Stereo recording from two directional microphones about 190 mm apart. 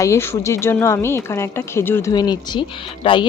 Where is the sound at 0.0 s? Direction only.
15° left (ahead or behind).